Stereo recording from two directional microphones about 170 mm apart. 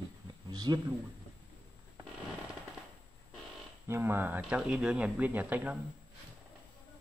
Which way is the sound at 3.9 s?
15° right (ahead or behind).